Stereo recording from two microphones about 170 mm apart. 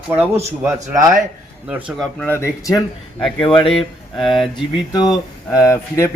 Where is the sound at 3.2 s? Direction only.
5° left (ahead or behind).